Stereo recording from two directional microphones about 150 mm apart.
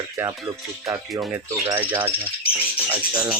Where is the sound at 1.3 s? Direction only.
10° right (ahead or behind).